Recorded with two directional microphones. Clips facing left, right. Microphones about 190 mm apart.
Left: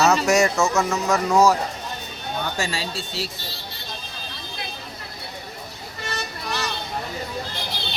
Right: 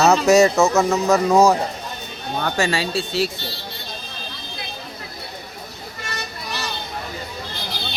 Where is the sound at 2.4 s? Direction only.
70° right (ahead or behind).